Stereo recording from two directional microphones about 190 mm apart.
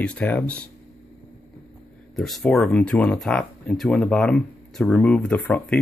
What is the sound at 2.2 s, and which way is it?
Speech, centre (ahead or behind).